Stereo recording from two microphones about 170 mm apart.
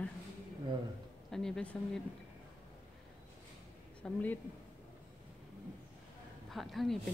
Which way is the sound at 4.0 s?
10° left (ahead or behind).